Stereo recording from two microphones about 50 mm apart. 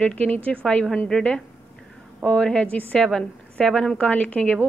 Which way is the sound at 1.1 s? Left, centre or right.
Centre.